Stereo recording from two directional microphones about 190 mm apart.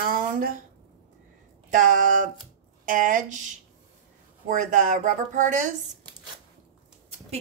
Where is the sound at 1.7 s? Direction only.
45° right (ahead or behind).